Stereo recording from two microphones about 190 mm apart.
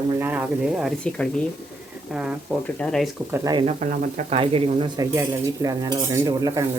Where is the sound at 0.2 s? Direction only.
10° right (ahead or behind).